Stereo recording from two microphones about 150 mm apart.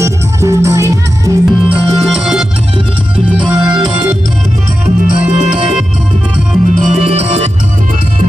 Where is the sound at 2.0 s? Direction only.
5° right (ahead or behind).